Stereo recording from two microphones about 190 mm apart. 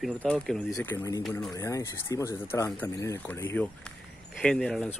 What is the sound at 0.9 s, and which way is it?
Speech, 20° left (ahead or behind).